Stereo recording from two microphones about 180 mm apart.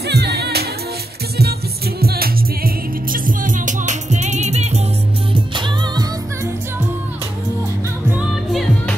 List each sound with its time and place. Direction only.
0.0 s music: 65° right (ahead or behind)
2.0 s music: 55° right (ahead or behind); by 4.8 s 35° right (ahead or behind)
5.3 s music: 25° right (ahead or behind)
8.1 s music: centre (ahead or behind)